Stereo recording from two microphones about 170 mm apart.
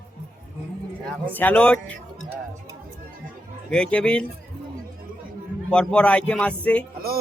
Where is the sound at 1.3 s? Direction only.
10° left (ahead or behind).